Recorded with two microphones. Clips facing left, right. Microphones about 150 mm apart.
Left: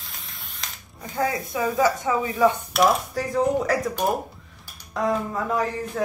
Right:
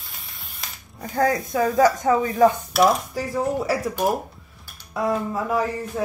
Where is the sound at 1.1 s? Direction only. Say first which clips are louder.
Right 4 dB; 45° right (ahead or behind).